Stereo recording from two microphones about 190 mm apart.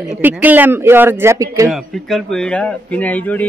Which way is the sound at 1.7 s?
Centre (ahead or behind).